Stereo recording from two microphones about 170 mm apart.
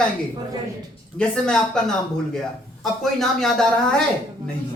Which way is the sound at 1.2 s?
5° left (ahead or behind).